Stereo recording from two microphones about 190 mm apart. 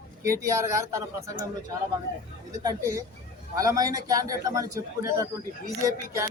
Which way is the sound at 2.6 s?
20° right (ahead or behind).